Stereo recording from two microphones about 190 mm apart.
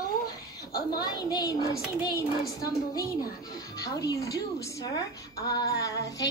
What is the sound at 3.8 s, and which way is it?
A woman's voice, 20° left (ahead or behind).